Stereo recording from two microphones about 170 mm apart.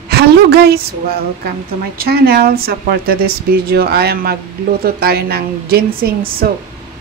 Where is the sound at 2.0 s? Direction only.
60° right (ahead or behind).